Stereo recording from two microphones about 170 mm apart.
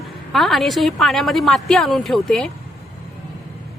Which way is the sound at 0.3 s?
Centre (ahead or behind).